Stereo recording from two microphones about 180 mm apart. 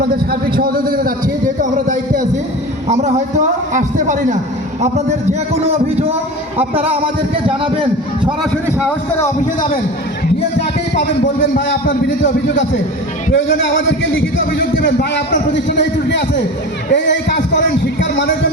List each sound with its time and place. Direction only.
0.0 s a man's voice: 60° right (ahead or behind); by 7.1 s 30° right (ahead or behind)
8.2 s a man's voice: 5° right (ahead or behind)
9.1 s a man's voice: 15° left (ahead or behind)
11.5 s a man's voice: 80° left
14.6 s a man's voice: 65° left (ahead or behind); by 18.3 s 90° left